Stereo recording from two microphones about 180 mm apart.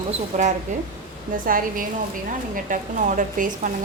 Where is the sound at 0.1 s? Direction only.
40° right (ahead or behind).